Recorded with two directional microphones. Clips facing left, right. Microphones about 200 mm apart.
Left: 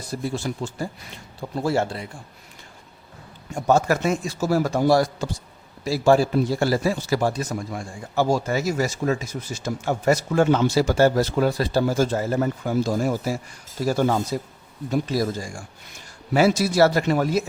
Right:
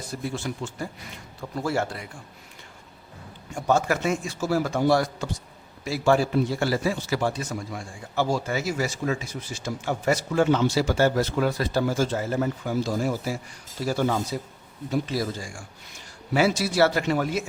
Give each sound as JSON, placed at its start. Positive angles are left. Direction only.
{"t": 0.1, "sound": "a man's voice", "side_deg": 35}
{"t": 3.7, "sound": "a man's voice", "side_deg": 40}